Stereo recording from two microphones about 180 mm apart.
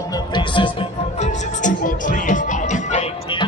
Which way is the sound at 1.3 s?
45° left (ahead or behind).